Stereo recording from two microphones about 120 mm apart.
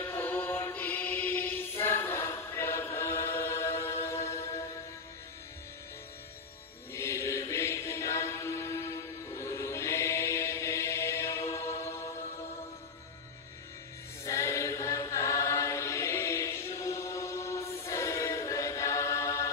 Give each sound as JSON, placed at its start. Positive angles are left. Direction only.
{"t": 0.0, "sound": "mantra", "side_deg": 15}
{"t": 6.9, "sound": "chant", "side_deg": 25}
{"t": 14.2, "sound": "chant", "side_deg": 25}